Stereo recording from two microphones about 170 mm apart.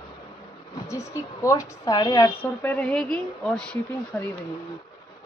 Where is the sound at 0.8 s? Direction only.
15° left (ahead or behind).